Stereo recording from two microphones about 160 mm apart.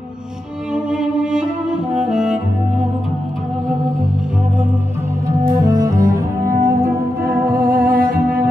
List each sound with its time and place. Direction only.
0.7 s music: 5° right (ahead or behind)
5.6 s cello: 25° right (ahead or behind)
6.6 s music: 15° right (ahead or behind)
7.5 s music: 65° right (ahead or behind)